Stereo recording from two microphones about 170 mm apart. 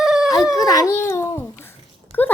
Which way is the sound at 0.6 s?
20° left (ahead or behind).